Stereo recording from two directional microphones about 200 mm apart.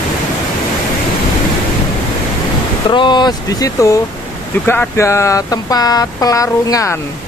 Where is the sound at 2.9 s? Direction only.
25° left (ahead or behind).